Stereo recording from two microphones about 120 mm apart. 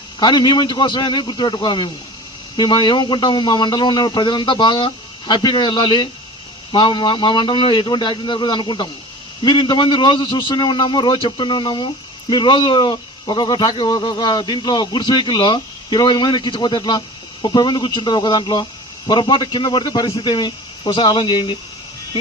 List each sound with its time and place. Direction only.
0.2 s speech: 35° left (ahead or behind)